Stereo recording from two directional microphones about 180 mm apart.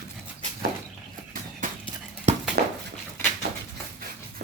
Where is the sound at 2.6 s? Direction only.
60° right (ahead or behind).